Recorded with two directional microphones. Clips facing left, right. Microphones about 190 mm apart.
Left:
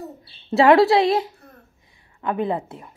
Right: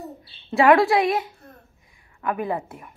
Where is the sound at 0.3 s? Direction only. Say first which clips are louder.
Left 2 dB; 25° left (ahead or behind).